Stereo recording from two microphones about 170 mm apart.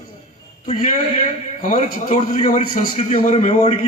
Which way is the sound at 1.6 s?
40° left (ahead or behind).